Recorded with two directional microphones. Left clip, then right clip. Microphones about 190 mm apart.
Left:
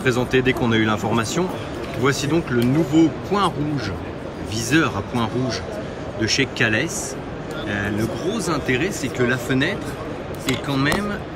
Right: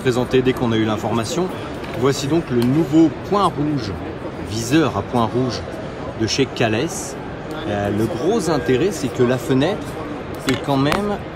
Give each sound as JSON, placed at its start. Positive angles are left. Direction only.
{"t": 0.0, "sound": "speech", "side_deg": -5}